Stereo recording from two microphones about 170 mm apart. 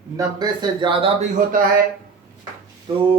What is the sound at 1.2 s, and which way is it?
Speech, 50° right (ahead or behind).